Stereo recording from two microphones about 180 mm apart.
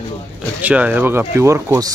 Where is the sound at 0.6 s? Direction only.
10° right (ahead or behind).